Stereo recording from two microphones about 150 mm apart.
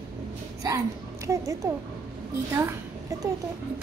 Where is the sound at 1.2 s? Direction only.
20° right (ahead or behind).